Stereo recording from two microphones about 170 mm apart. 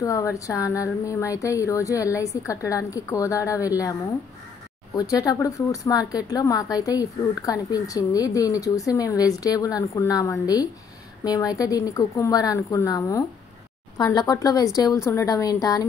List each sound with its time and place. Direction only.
0.0 s a woman's voice: 20° left (ahead or behind)
4.9 s a woman's voice: 20° left (ahead or behind)